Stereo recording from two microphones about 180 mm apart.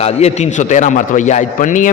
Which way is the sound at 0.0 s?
35° left (ahead or behind).